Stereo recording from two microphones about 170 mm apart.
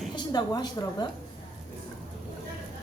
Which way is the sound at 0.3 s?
25° left (ahead or behind).